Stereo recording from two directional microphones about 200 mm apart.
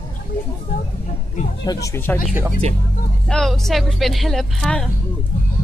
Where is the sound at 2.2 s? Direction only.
10° right (ahead or behind).